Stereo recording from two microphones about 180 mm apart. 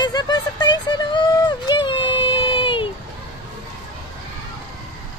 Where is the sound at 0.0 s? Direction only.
25° left (ahead or behind).